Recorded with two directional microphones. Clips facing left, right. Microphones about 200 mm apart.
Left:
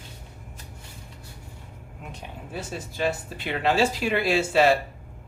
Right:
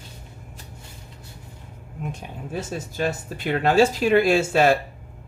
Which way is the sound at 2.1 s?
45° right (ahead or behind).